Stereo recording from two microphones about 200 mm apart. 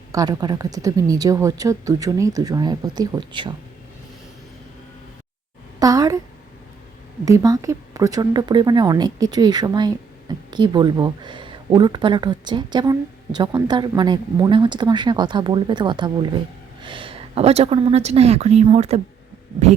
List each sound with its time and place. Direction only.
0.1 s speech: 15° right (ahead or behind)
5.8 s a sound: 20° right (ahead or behind)
7.3 s speech: 15° right (ahead or behind); by 19.0 s 30° right (ahead or behind)